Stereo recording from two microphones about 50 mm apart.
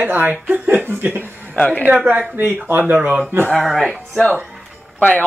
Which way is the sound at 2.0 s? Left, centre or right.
Right.